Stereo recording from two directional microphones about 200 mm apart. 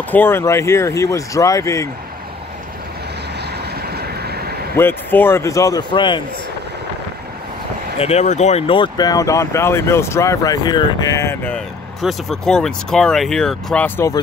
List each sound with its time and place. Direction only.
0.1 s speech: 10° left (ahead or behind)
3.5 s vehicle: 50° right (ahead or behind)
4.7 s speech: 10° left (ahead or behind)
8.0 s speech: 35° left (ahead or behind); by 14.2 s 15° left (ahead or behind)